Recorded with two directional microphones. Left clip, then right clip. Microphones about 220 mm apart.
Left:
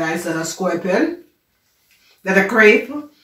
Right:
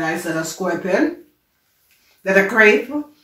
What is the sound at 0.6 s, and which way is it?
Speech, centre (ahead or behind).